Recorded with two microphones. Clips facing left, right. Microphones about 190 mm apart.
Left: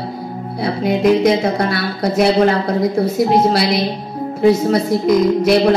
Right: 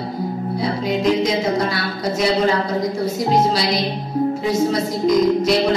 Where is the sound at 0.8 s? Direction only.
60° left (ahead or behind).